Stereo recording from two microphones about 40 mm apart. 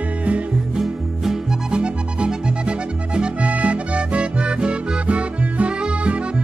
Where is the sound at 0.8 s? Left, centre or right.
Centre.